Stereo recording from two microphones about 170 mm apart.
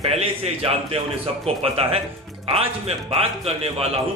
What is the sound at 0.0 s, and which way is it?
Speech, 35° right (ahead or behind).